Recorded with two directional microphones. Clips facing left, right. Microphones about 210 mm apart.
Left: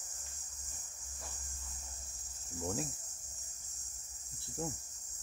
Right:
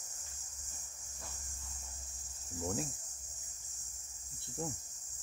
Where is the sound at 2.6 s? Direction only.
Centre (ahead or behind).